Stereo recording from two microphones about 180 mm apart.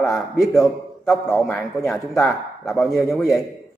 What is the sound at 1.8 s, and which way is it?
Speech, 15° left (ahead or behind).